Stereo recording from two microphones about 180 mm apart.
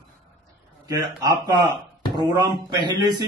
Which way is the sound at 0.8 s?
20° right (ahead or behind).